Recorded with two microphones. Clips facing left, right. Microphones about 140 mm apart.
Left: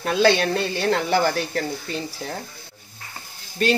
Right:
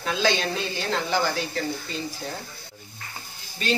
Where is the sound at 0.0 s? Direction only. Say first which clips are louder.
Left 6 dB; 60° left (ahead or behind).